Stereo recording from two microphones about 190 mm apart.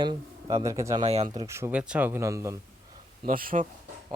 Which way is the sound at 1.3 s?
15° right (ahead or behind).